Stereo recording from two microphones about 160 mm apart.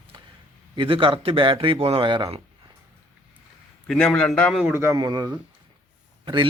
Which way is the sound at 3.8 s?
5° left (ahead or behind).